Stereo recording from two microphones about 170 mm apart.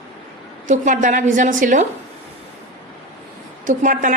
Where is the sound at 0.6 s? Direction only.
45° right (ahead or behind).